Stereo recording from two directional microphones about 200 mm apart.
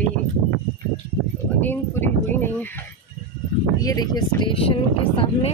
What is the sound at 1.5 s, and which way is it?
Speech, 10° left (ahead or behind).